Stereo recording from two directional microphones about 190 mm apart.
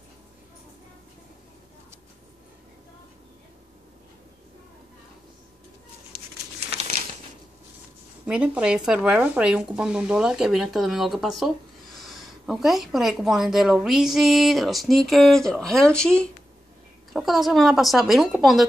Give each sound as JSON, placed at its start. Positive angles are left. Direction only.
{"t": 8.3, "sound": "speech", "side_deg": -5}